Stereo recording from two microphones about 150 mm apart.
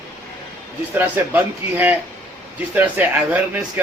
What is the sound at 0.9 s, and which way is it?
A man's voice, 10° right (ahead or behind).